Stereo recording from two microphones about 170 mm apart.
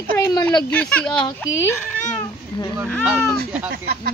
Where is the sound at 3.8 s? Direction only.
65° right (ahead or behind).